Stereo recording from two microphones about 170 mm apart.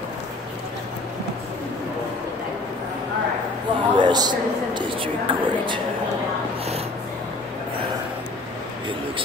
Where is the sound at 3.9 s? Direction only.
25° right (ahead or behind).